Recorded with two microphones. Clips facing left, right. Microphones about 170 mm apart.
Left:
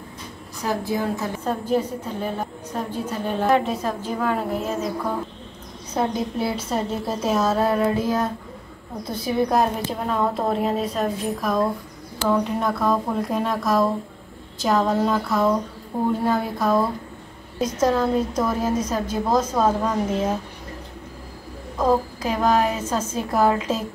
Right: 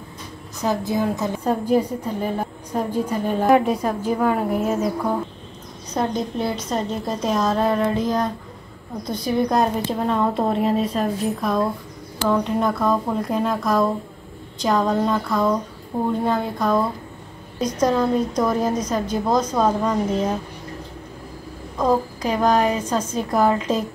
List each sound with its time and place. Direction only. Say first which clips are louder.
0.6 s a woman's voice: right 3 dB; 20° right (ahead or behind)
5.9 s a woman's voice: even; 5° left (ahead or behind)
21.7 s a woman's voice: even; 5° left (ahead or behind)